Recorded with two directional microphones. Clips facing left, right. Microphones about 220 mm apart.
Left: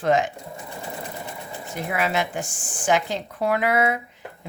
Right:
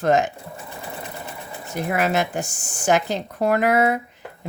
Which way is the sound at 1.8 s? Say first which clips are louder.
Right 3 dB; 45° right (ahead or behind).